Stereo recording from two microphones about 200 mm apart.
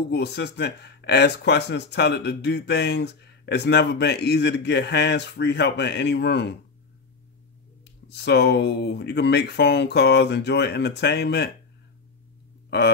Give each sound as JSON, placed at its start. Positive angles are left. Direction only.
{"t": 0.1, "sound": "speech", "side_deg": 55}
{"t": 8.1, "sound": "speech", "side_deg": 55}
{"t": 12.6, "sound": "a sound", "side_deg": 55}